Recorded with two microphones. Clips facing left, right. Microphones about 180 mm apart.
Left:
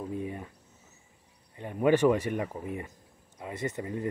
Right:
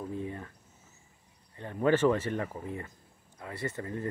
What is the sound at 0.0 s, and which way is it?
Cricket, 15° left (ahead or behind).